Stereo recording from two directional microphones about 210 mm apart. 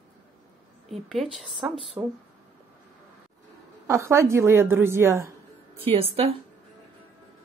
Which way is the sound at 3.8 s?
15° right (ahead or behind).